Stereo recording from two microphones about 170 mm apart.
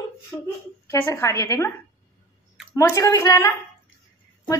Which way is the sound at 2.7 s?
20° left (ahead or behind).